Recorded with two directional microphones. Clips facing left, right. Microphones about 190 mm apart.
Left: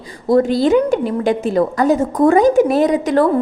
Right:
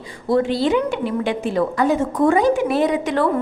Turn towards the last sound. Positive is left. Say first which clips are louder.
# left 5 dB
turn(degrees=40)  # may be behind; listen again after turning